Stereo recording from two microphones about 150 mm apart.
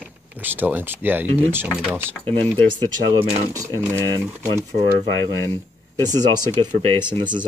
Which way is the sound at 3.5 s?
20° right (ahead or behind).